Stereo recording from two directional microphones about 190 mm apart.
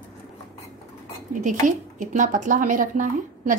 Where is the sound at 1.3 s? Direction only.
40° right (ahead or behind).